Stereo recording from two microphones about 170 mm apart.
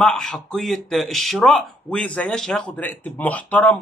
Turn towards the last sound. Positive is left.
turn(degrees=10)  # may be behind; listen again after turning